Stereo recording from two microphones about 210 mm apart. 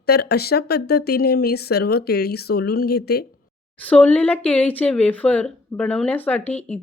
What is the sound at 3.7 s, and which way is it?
Speech, 5° left (ahead or behind).